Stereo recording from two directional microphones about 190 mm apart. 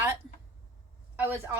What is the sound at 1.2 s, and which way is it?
Speech, 10° right (ahead or behind).